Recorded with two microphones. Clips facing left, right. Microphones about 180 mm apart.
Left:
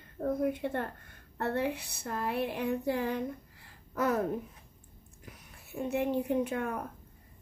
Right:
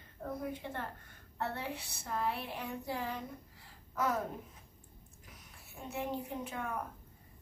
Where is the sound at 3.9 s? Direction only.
60° left (ahead or behind).